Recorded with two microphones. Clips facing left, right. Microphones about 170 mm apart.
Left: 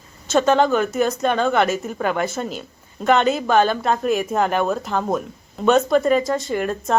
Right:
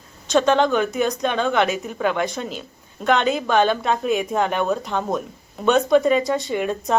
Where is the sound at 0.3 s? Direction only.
5° left (ahead or behind).